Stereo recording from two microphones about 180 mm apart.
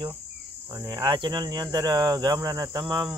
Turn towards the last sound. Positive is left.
turn(degrees=-25)  # may be behind; listen again after turning